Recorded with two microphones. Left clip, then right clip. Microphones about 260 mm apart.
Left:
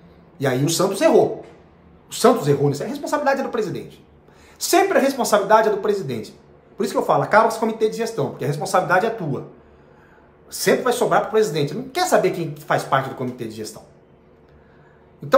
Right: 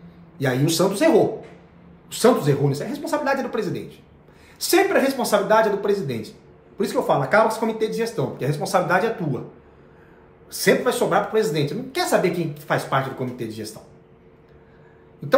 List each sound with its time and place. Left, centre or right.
0.4 s speech: centre
10.6 s speech: centre